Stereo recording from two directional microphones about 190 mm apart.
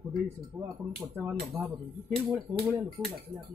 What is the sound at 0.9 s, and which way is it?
Speech, 10° right (ahead or behind).